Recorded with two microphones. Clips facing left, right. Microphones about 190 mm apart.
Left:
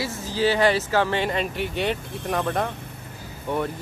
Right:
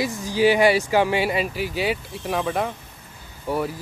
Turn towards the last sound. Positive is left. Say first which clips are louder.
# right 1 dB
turn(degrees=-10)  # may be behind; listen again after turning